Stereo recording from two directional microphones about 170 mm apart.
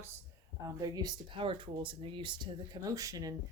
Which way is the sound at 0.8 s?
25° right (ahead or behind).